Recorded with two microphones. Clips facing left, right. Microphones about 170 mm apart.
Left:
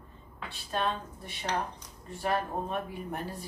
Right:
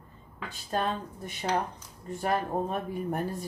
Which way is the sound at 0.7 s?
40° right (ahead or behind).